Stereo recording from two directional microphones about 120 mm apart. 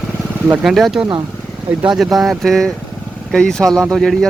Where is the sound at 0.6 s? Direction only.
Centre (ahead or behind).